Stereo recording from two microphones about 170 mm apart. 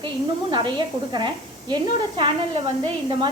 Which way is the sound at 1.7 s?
30° right (ahead or behind).